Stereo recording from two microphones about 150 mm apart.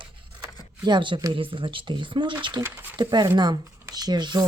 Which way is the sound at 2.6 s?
15° right (ahead or behind).